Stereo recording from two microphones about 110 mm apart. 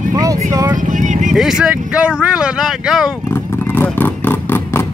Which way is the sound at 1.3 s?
5° right (ahead or behind).